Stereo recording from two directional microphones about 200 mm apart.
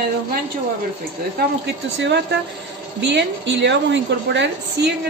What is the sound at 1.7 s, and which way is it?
A woman's voice, 60° right (ahead or behind).